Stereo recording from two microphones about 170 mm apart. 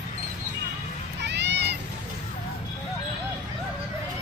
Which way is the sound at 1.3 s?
90° right.